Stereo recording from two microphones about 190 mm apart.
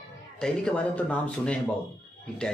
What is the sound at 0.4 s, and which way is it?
Speech, 5° left (ahead or behind).